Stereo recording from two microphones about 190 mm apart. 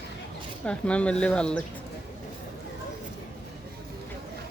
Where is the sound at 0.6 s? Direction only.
5° left (ahead or behind).